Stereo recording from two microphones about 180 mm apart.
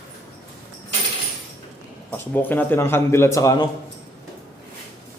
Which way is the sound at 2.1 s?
10° left (ahead or behind).